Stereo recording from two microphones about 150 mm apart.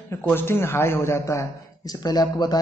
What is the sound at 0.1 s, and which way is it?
Speech, 15° left (ahead or behind).